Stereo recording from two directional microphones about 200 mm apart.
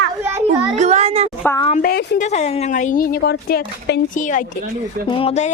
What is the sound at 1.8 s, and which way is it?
Speech, 50° left (ahead or behind).